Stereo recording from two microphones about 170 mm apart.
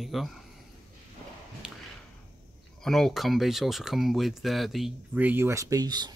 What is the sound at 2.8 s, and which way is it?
Speech, centre (ahead or behind).